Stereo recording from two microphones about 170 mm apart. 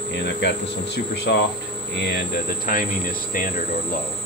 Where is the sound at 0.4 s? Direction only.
85° left; by 3.6 s 55° left (ahead or behind).